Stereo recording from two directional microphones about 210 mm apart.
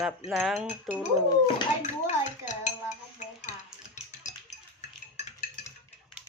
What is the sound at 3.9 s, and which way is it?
Music, 35° left (ahead or behind).